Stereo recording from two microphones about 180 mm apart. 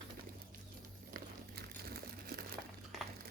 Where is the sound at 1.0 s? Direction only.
55° right (ahead or behind).